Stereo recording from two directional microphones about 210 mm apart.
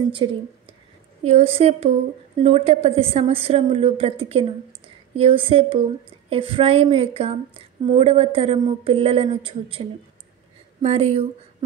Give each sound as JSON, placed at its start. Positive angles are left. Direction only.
{"t": 0.1, "sound": "a woman's voice", "side_deg": -25}